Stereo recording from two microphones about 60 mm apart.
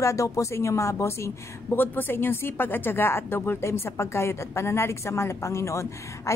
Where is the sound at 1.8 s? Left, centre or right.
Left.